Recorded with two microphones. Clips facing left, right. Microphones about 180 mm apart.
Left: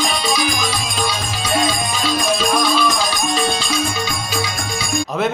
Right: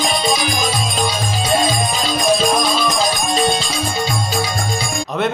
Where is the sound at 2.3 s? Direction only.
25° right (ahead or behind).